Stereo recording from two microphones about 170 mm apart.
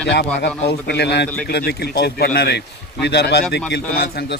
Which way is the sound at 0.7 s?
90° left.